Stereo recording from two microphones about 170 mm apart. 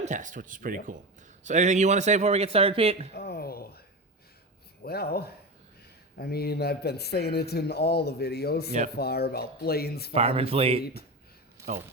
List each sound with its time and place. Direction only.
0.0 s a man's voice: 45° right (ahead or behind)
3.1 s speech: 65° left (ahead or behind)
4.8 s speech: 65° left (ahead or behind)
10.2 s a man's voice: 35° right (ahead or behind)